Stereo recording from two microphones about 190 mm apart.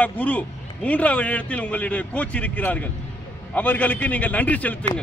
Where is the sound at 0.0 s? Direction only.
10° left (ahead or behind).